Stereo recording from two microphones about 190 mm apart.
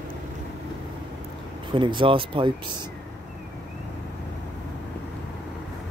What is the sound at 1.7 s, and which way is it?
Speech, 25° right (ahead or behind).